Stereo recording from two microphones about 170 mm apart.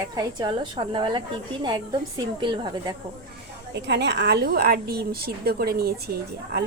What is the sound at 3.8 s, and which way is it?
A woman's voice, 85° right.